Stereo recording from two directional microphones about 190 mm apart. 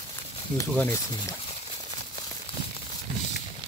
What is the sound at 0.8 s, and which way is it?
Speech, 15° left (ahead or behind).